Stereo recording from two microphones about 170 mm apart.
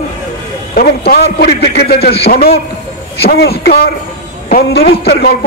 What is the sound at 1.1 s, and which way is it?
A man's voice, 70° left (ahead or behind).